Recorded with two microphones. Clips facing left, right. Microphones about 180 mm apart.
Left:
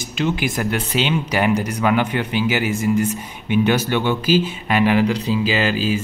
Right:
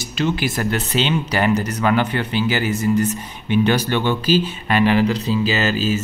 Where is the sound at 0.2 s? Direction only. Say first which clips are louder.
Even; 15° left (ahead or behind).